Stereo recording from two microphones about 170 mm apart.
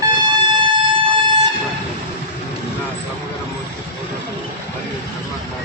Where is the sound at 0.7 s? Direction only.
30° right (ahead or behind).